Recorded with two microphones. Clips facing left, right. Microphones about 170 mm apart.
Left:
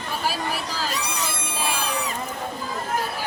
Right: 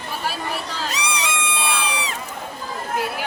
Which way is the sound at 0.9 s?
80° right.